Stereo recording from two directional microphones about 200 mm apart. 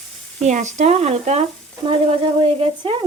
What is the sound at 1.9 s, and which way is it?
Frying, 30° right (ahead or behind).